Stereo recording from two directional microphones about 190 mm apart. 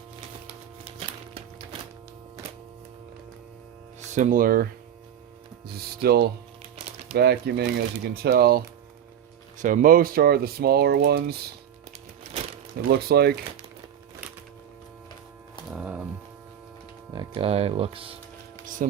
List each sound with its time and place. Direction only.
4.1 s speech: 45° right (ahead or behind)
9.6 s speech: 45° right (ahead or behind)
12.9 s speech: 55° right (ahead or behind)
15.7 s a sound: 5° right (ahead or behind)
17.2 s speech: 30° right (ahead or behind)
18.6 s a sound: 45° right (ahead or behind)